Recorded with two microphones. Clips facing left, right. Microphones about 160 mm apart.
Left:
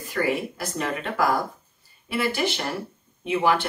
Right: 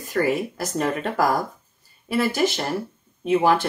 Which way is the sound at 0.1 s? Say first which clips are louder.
Right 3 dB; 40° right (ahead or behind).